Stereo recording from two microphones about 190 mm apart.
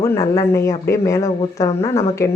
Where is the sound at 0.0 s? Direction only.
15° left (ahead or behind).